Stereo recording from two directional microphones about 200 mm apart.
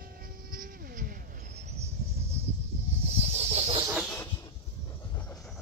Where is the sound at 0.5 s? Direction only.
45° right (ahead or behind).